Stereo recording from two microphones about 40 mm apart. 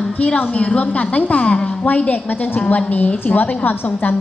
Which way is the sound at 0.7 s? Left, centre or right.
Left.